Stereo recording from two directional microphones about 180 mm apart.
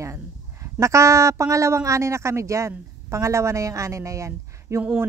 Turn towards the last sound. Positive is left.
turn(degrees=-15)  # may be behind; listen again after turning